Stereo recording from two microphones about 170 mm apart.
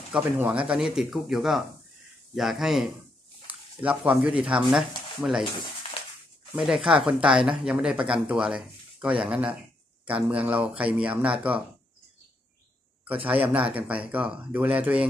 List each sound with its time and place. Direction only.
0.1 s speech: 5° right (ahead or behind)
5.4 s a sound: 30° left (ahead or behind)
6.5 s speech: centre (ahead or behind)
13.0 s speech: 10° right (ahead or behind)